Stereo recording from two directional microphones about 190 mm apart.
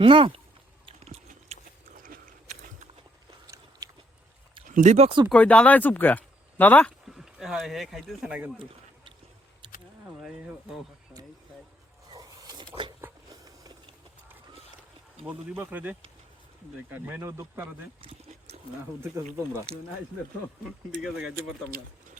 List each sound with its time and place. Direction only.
0.0 s speech: 25° right (ahead or behind)
0.9 s biting: 35° right (ahead or behind)
3.4 s biting: 20° right (ahead or behind)
4.7 s speech: 40° right (ahead or behind)
5.3 s speech: 5° left (ahead or behind)
12.1 s a sound: 20° right (ahead or behind)
15.2 s speech: 5° right (ahead or behind)
18.0 s a sound: 35° right (ahead or behind)